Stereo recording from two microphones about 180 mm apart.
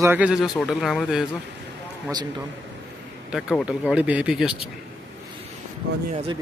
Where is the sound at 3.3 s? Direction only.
Centre (ahead or behind).